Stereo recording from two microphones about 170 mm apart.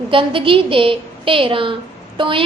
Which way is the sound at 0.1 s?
30° right (ahead or behind).